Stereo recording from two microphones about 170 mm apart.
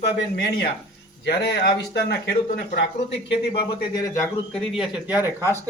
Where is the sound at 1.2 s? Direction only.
80° left.